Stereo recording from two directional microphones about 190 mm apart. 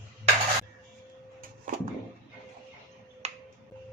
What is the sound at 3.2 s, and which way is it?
Finger snapping, 35° right (ahead or behind).